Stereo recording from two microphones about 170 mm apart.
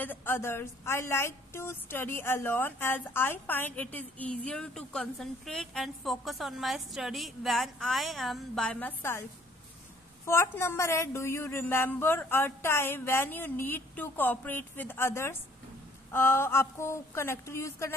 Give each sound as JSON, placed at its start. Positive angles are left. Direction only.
{"t": 0.0, "sound": "a woman's voice", "side_deg": 10}
{"t": 10.2, "sound": "a woman's voice", "side_deg": 15}